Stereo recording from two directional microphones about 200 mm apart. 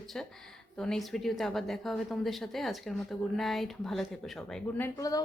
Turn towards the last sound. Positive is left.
turn(degrees=15)  # may be behind; listen again after turning